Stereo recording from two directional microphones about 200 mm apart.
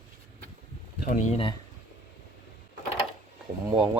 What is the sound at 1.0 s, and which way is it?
Speech, 40° left (ahead or behind).